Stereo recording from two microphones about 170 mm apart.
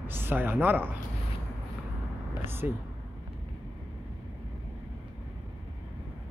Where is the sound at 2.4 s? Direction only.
15° right (ahead or behind).